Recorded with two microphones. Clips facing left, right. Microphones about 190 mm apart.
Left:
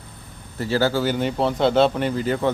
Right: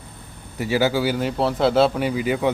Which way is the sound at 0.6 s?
15° right (ahead or behind).